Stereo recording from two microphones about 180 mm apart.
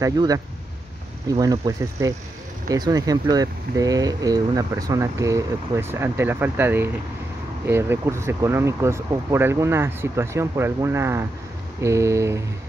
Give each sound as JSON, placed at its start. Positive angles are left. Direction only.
{"t": 0.0, "sound": "speech", "side_deg": -20}